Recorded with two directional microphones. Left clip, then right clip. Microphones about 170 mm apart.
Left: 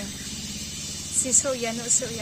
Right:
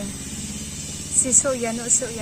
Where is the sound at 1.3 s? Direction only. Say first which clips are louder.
Right 3 dB; 10° left (ahead or behind).